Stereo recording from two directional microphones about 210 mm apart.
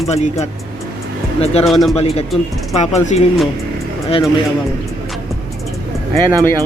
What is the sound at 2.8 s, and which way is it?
Speech, 35° left (ahead or behind).